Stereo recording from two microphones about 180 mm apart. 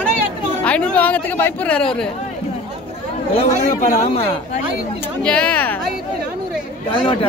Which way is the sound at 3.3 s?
40° left (ahead or behind).